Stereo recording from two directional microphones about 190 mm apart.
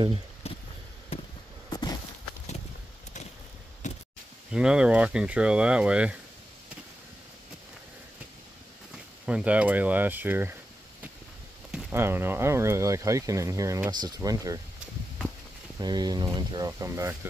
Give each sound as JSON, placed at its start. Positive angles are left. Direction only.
{"t": 3.8, "sound": "a sound", "side_deg": 40}
{"t": 4.5, "sound": "speech", "side_deg": -5}
{"t": 8.9, "sound": "speech", "side_deg": -5}
{"t": 11.7, "sound": "speech", "side_deg": -10}
{"t": 15.8, "sound": "speech", "side_deg": -20}